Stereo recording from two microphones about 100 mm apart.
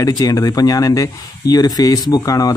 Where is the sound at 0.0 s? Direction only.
35° left (ahead or behind).